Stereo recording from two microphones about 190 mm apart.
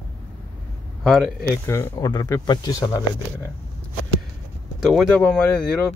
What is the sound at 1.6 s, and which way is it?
Speech, 15° left (ahead or behind).